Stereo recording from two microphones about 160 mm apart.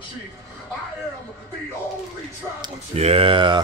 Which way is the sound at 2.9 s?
40° right (ahead or behind).